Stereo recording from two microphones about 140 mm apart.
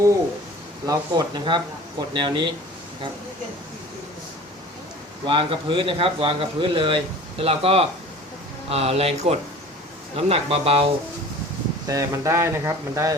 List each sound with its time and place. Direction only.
0.9 s a man's voice: 30° right (ahead or behind)
5.2 s a man's voice: 40° right (ahead or behind)
11.9 s speech: 25° right (ahead or behind)